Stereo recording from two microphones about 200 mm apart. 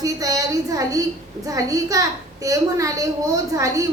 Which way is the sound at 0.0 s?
15° right (ahead or behind).